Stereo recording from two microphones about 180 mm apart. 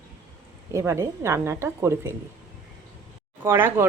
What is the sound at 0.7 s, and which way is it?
Speech, 15° right (ahead or behind).